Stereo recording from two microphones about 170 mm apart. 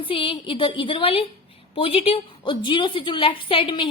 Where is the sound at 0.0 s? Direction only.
30° left (ahead or behind).